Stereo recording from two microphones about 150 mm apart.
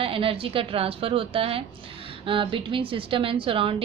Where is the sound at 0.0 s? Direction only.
35° right (ahead or behind).